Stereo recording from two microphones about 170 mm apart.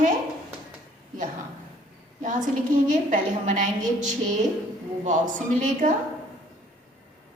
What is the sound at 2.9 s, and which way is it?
A woman's voice, 45° right (ahead or behind).